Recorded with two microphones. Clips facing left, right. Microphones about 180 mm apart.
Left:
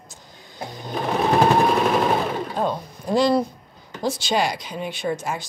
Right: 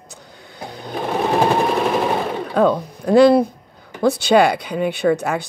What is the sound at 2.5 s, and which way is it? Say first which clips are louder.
Speech: right 8 dB; 60° right (ahead or behind).